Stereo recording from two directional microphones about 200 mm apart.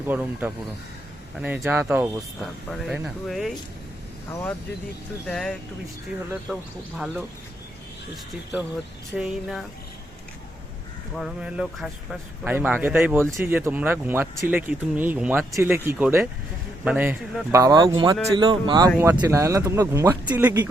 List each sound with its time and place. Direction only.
0.0 s speech: 10° right (ahead or behind)
5.2 s speech: 5° left (ahead or behind)
9.1 s speech: centre (ahead or behind)
11.1 s speech: 5° right (ahead or behind)